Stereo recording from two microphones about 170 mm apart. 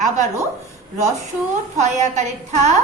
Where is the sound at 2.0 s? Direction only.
45° right (ahead or behind).